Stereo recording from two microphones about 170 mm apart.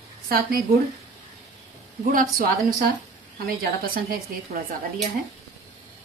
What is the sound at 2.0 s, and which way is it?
A woman's voice, 55° right (ahead or behind).